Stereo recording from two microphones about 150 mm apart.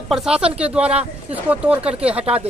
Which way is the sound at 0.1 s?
5° right (ahead or behind).